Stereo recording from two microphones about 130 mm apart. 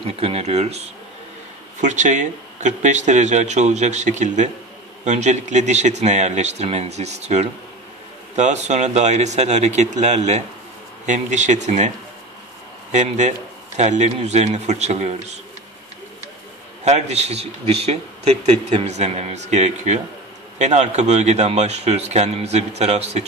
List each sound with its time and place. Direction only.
0.0 s speech: 50° right (ahead or behind)
1.8 s a man's voice: 70° right (ahead or behind)
12.9 s a man's voice: 65° right (ahead or behind)
16.8 s a man's voice: 60° right (ahead or behind)